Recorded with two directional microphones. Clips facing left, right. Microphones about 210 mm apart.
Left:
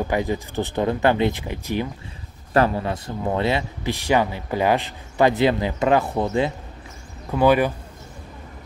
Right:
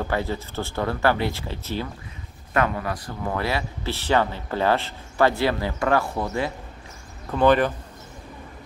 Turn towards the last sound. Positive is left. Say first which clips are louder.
# left 1 dB
turn(degrees=10)  # may be behind; listen again after turning